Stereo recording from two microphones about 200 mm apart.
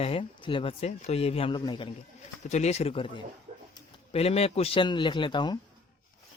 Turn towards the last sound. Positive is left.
turn(degrees=20)  # may be behind; listen again after turning